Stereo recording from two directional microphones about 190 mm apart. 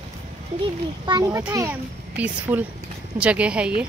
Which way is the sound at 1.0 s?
20° right (ahead or behind).